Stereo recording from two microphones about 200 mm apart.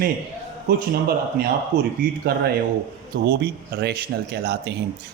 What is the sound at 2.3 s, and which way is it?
Speech, 50° right (ahead or behind).